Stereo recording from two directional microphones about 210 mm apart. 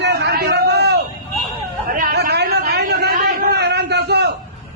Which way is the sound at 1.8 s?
40° right (ahead or behind).